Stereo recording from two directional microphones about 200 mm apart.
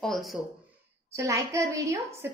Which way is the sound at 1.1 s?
15° right (ahead or behind).